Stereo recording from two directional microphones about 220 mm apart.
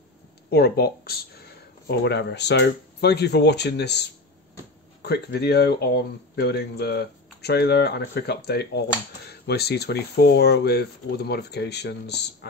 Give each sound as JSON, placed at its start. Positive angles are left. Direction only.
{"t": 0.5, "sound": "speech", "side_deg": 45}